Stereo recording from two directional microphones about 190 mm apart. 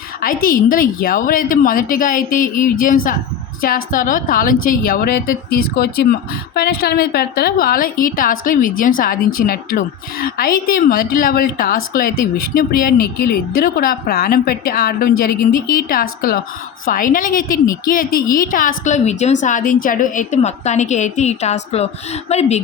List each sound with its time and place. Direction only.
0.2 s a woman's voice: 50° left (ahead or behind)